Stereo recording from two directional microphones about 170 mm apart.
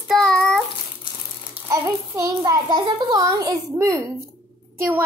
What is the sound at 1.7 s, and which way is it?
A child's voice, 20° right (ahead or behind).